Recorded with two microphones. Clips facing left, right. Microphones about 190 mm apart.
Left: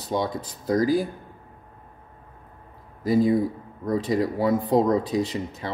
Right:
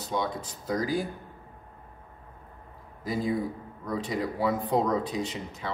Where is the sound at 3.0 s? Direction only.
40° left (ahead or behind).